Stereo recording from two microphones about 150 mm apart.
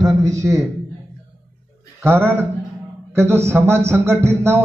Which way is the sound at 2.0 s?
15° right (ahead or behind).